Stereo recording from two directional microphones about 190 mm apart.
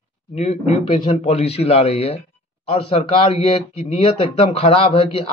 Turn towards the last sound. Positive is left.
turn(degrees=30)  # may be behind; listen again after turning